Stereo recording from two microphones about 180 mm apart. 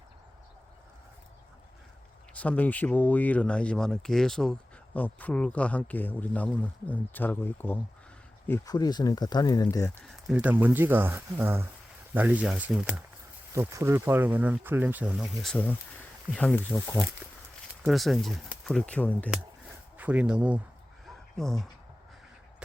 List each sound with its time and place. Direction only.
2.3 s speech: 10° left (ahead or behind)
10.0 s speech: centre (ahead or behind)
17.8 s speech: centre (ahead or behind)
19.3 s a sound: 5° right (ahead or behind)
21.3 s speech: centre (ahead or behind)